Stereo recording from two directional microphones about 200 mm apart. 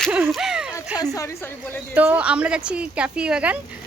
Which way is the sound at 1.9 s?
10° right (ahead or behind).